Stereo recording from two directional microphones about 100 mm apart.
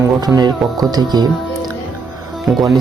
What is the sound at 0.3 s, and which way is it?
Speech, 40° right (ahead or behind).